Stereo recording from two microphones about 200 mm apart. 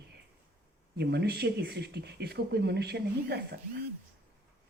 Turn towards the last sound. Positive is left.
turn(degrees=-55)  # may be behind; listen again after turning